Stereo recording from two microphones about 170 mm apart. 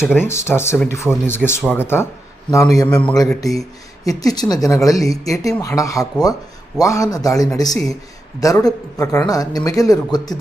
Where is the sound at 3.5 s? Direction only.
Centre (ahead or behind).